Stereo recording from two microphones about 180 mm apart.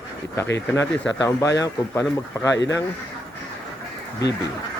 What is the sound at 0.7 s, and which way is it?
Speech, 15° left (ahead or behind).